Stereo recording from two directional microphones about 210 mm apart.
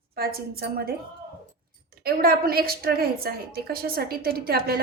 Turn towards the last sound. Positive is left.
turn(degrees=-45)  # may be behind; listen again after turning